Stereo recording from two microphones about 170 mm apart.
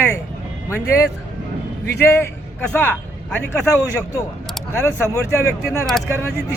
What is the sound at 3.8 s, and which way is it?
Speech, 15° right (ahead or behind).